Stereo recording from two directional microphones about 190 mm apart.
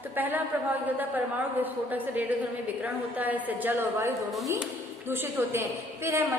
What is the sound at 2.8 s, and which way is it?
A woman's voice, 10° right (ahead or behind).